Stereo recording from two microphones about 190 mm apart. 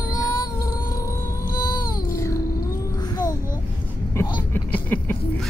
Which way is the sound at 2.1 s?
15° left (ahead or behind).